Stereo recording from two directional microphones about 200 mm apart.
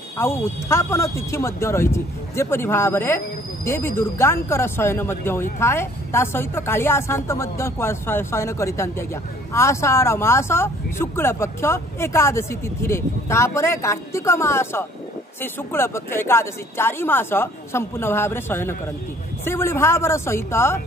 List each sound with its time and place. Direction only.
0.2 s speech: 15° left (ahead or behind)